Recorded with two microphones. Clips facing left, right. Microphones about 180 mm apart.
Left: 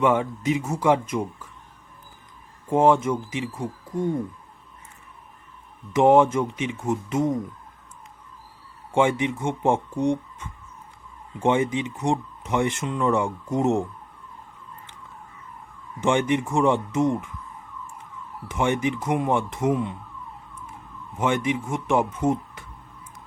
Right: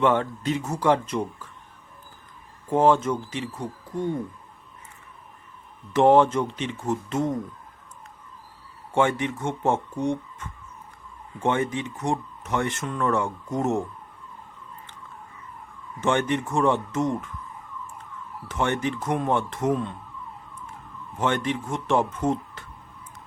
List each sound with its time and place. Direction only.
0.0 s speech: 10° left (ahead or behind)
2.6 s speech: 15° left (ahead or behind)
6.0 s speech: 10° left (ahead or behind)
8.9 s speech: 15° left (ahead or behind)
16.0 s speech: 15° left (ahead or behind)
18.4 s speech: 15° left (ahead or behind)
21.2 s speech: 10° left (ahead or behind)